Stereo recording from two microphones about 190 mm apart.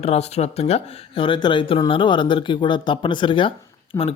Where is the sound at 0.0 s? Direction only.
35° left (ahead or behind).